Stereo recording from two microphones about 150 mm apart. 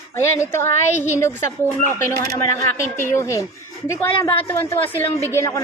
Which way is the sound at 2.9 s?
20° left (ahead or behind).